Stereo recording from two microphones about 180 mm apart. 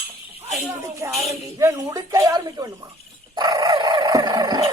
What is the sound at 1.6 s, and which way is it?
Speech, 20° right (ahead or behind).